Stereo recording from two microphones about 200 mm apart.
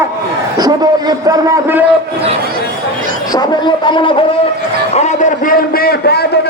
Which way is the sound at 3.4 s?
25° left (ahead or behind).